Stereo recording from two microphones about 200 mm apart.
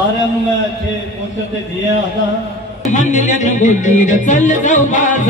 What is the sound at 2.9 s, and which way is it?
Music, 35° left (ahead or behind).